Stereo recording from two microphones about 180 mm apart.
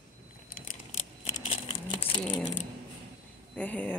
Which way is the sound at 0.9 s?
40° left (ahead or behind).